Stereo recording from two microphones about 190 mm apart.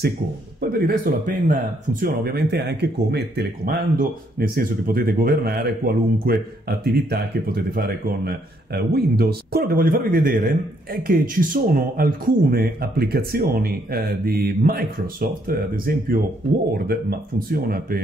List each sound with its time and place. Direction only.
0.6 s speech: 55° right (ahead or behind)